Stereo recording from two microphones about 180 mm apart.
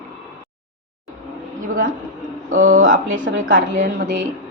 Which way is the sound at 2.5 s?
45° right (ahead or behind).